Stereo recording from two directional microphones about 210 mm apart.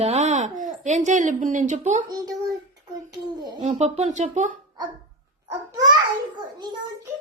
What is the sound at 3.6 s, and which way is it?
Speech, 30° right (ahead or behind).